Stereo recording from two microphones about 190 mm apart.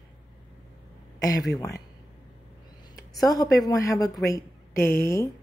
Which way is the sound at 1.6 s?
15° left (ahead or behind).